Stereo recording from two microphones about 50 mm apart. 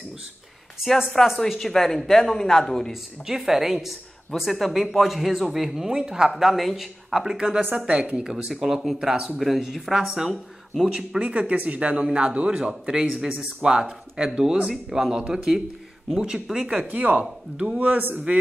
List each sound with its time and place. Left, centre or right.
1.2 s speech: centre
2.9 s speech: centre
6.3 s speech: centre
11.0 s a man's voice: right
16.8 s a man's voice: right
17.7 s speech: right